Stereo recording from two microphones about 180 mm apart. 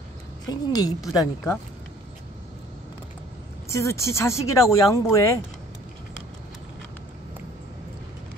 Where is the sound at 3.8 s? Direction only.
15° left (ahead or behind).